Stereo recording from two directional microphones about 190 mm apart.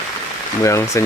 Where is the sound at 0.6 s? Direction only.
15° left (ahead or behind).